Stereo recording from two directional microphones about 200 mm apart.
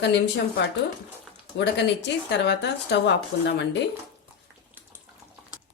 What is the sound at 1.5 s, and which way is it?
A woman's voice, 60° left (ahead or behind).